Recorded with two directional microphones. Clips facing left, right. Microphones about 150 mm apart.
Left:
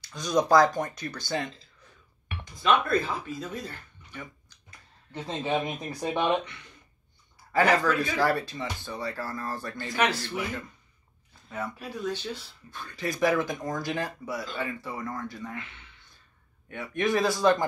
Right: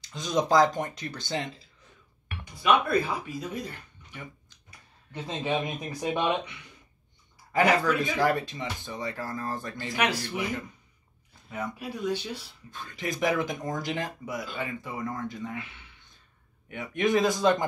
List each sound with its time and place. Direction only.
0.0 s speech: 20° right (ahead or behind)
2.6 s speech: 10° right (ahead or behind)
7.5 s speech: 15° right (ahead or behind)
16.6 s speech: 20° right (ahead or behind)